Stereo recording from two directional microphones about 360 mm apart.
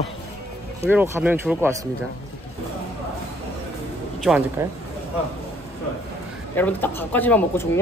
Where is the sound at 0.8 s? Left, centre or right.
Centre.